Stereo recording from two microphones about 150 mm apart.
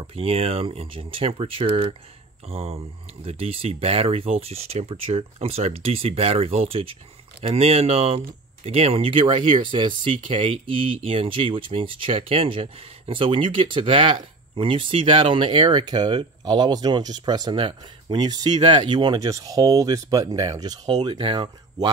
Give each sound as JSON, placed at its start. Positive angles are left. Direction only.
{"t": 0.0, "sound": "speech", "side_deg": -40}